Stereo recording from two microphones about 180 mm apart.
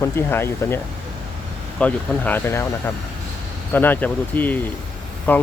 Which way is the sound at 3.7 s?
10° left (ahead or behind).